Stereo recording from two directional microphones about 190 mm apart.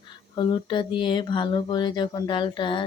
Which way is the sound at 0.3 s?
25° left (ahead or behind).